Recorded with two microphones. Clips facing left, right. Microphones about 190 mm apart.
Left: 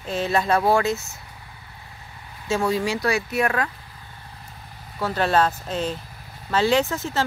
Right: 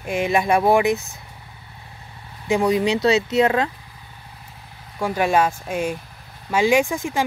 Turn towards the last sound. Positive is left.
turn(degrees=-15)  # may be behind; listen again after turning